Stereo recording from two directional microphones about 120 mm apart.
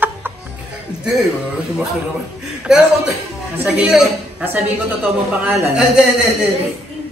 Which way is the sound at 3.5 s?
10° right (ahead or behind).